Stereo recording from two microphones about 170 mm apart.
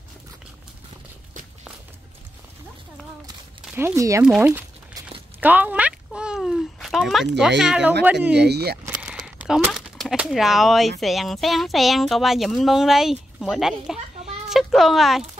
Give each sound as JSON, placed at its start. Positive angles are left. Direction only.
{"t": 3.7, "sound": "speech", "side_deg": -15}
{"t": 4.4, "sound": "a sound", "side_deg": -15}
{"t": 8.0, "sound": "speech", "side_deg": -10}
{"t": 8.4, "sound": "speech", "side_deg": -75}
{"t": 9.0, "sound": "speech", "side_deg": -5}